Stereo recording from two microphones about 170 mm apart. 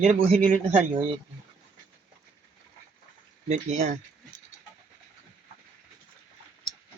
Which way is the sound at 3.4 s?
40° right (ahead or behind).